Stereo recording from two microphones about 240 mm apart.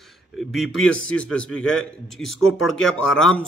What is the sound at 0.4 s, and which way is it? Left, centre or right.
A man's voice, centre.